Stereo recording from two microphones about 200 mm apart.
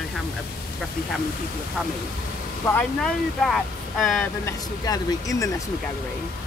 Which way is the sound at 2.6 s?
5° left (ahead or behind).